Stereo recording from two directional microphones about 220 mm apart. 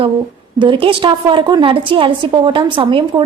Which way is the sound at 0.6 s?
25° right (ahead or behind).